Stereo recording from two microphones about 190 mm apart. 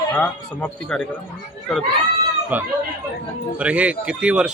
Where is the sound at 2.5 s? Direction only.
10° right (ahead or behind).